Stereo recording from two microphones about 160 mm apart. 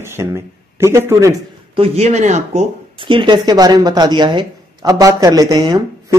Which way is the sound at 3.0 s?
30° right (ahead or behind).